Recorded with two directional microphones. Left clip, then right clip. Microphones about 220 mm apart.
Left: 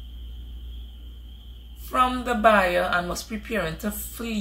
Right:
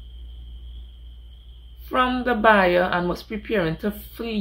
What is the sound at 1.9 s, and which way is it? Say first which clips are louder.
Speech: right 1 dB; 35° right (ahead or behind).